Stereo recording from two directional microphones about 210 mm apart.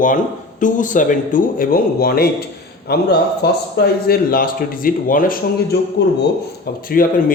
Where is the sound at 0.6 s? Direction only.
35° left (ahead or behind).